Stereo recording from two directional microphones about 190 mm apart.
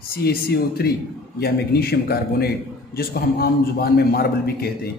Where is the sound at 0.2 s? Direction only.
55° left (ahead or behind).